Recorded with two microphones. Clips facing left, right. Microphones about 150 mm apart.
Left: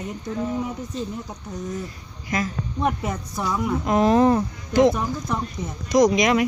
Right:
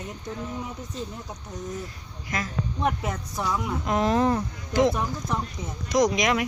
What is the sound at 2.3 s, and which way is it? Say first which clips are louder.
A woman's voice: left 4 dB; 5° left (ahead or behind).